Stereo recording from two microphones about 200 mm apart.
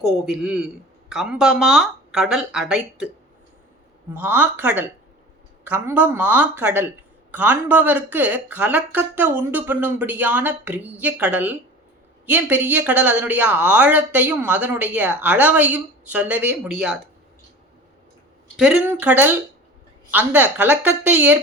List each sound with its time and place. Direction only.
0.3 s speech: centre (ahead or behind)
4.1 s speech: 10° right (ahead or behind)
18.5 s speech: centre (ahead or behind)